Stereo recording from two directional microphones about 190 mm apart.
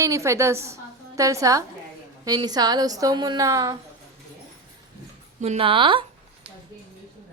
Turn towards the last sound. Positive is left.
turn(degrees=-25)  # may be behind; listen again after turning